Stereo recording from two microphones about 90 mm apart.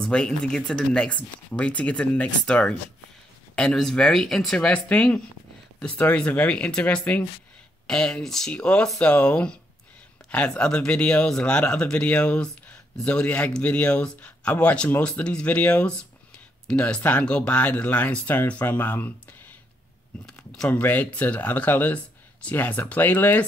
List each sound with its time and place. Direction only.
0.0 s speech: 10° left (ahead or behind)
20.2 s speech: 10° left (ahead or behind)